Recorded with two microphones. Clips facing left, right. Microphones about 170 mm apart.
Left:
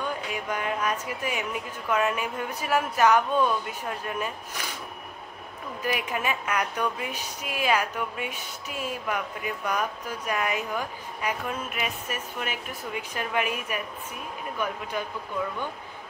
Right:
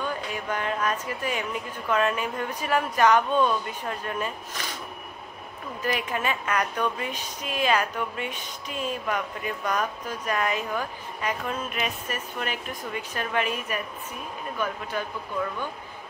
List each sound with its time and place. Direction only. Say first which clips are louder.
0.3 s a sound: right 1 dB; 10° left (ahead or behind)
1.0 s a woman's voice: right 1 dB; 10° left (ahead or behind)
5.9 s a woman's voice: right 1 dB; 10° left (ahead or behind)